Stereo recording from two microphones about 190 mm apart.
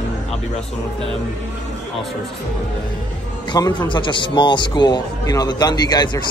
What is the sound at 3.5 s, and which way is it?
A man's voice, 25° left (ahead or behind).